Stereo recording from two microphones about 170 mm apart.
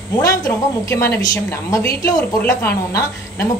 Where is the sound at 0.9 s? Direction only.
15° left (ahead or behind).